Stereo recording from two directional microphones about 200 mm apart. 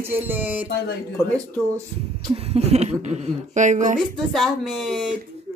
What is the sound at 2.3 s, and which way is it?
Speech, 30° right (ahead or behind).